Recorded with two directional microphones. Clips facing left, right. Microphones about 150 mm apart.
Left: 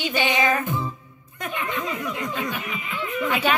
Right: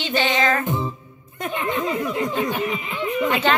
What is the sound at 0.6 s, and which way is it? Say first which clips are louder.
Music: right 3 dB; 25° right (ahead or behind).